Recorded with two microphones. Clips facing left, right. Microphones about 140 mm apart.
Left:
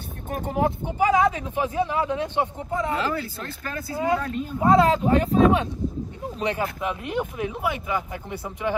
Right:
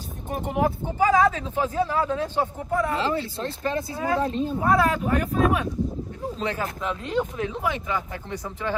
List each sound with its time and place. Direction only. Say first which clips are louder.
0.6 s speech: even; 20° left (ahead or behind)
3.0 s speech: right 2 dB; 25° right (ahead or behind)
3.9 s speech: left 4 dB; 20° left (ahead or behind)